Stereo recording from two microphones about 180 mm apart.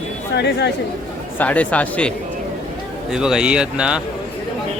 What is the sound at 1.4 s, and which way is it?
Speech, 10° left (ahead or behind).